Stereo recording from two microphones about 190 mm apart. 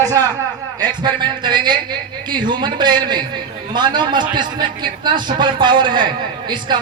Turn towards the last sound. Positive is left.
turn(degrees=-25)  # may be behind; listen again after turning